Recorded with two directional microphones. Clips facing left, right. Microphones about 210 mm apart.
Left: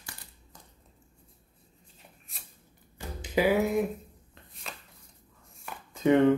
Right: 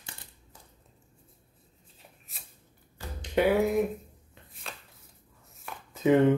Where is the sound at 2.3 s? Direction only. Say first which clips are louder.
Even; centre (ahead or behind).